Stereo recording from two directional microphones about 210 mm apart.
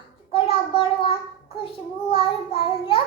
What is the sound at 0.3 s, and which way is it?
Child singing, 25° left (ahead or behind).